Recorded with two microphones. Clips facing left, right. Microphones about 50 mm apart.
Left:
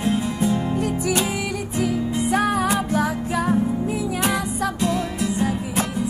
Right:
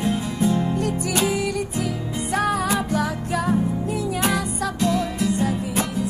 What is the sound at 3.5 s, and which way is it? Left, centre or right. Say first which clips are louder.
Music: left 2 dB; centre.